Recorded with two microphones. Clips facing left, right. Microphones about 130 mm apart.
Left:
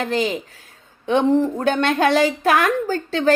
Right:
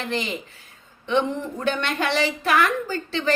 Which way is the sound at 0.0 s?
45° left (ahead or behind).